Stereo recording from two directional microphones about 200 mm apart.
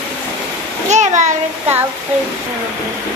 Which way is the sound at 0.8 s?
35° right (ahead or behind).